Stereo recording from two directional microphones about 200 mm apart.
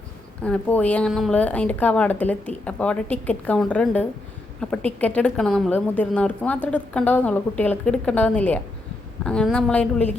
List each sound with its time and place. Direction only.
0.4 s a woman's voice: 5° left (ahead or behind)